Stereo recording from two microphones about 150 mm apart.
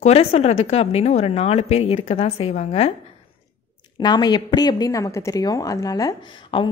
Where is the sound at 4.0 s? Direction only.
30° left (ahead or behind).